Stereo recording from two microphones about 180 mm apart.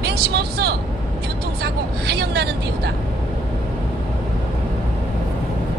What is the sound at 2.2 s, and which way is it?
Vehicle, 65° right (ahead or behind).